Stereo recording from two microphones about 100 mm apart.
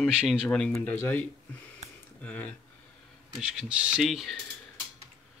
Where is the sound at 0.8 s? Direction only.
20° left (ahead or behind).